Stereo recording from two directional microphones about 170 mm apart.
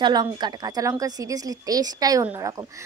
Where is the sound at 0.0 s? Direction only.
25° right (ahead or behind).